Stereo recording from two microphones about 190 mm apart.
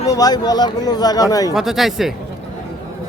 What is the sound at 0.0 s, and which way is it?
Speech, 20° left (ahead or behind).